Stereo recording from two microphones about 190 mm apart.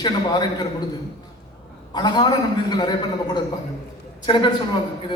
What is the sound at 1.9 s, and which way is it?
A woman's voice, 25° left (ahead or behind).